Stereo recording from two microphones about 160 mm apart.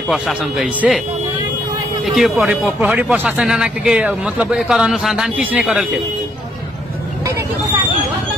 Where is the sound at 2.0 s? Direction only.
Centre (ahead or behind).